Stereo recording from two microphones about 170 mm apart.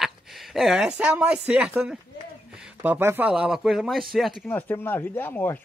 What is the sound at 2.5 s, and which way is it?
Speech, 5° right (ahead or behind).